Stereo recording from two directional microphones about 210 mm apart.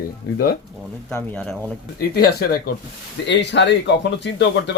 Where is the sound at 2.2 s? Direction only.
45° left (ahead or behind).